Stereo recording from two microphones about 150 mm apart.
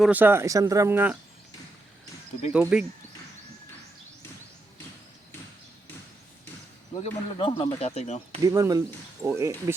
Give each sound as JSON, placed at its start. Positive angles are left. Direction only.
{"t": 0.0, "sound": "speech", "side_deg": -10}
{"t": 2.5, "sound": "speech", "side_deg": -5}
{"t": 7.0, "sound": "speech", "side_deg": 35}
{"t": 8.4, "sound": "speech", "side_deg": -20}